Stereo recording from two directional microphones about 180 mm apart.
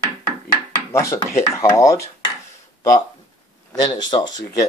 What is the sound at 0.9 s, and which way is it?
Chopping, 15° left (ahead or behind).